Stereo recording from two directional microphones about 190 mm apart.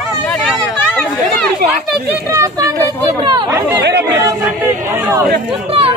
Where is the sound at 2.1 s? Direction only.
15° right (ahead or behind).